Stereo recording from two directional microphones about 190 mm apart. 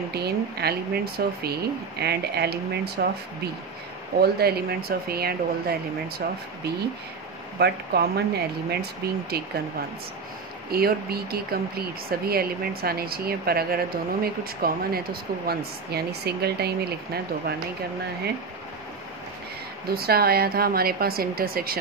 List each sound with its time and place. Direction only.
0.1 s speech: 55° right (ahead or behind)
4.2 s speech: 55° right (ahead or behind)
10.7 s speech: 55° right (ahead or behind)
19.9 s speech: 55° right (ahead or behind)